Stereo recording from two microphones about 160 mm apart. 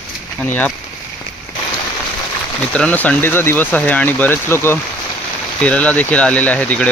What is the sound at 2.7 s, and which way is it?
Speech, 10° left (ahead or behind).